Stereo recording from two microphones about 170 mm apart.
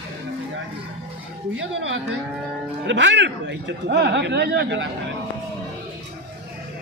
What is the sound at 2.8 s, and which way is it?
Speech, 90° right.